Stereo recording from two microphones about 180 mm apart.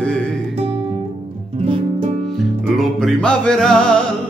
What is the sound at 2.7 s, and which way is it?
Music, centre (ahead or behind).